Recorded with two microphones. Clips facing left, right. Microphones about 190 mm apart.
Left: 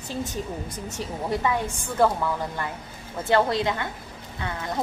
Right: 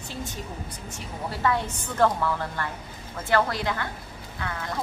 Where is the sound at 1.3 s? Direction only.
15° left (ahead or behind).